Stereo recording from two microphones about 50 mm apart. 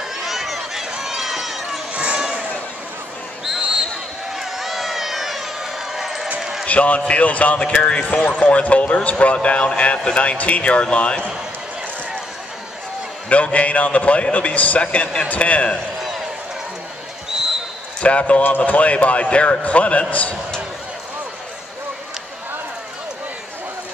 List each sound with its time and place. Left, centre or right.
0.2 s run: centre
2.1 s a sound: centre
4.3 s crowd: centre
6.7 s a man's voice: left
13.3 s a man's voice: left
18.0 s a man's voice: left